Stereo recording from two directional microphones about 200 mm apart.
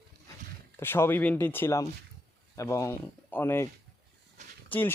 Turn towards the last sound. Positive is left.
turn(degrees=10)  # may be behind; listen again after turning